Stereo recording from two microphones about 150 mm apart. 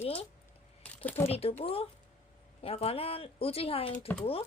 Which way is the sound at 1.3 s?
40° left (ahead or behind).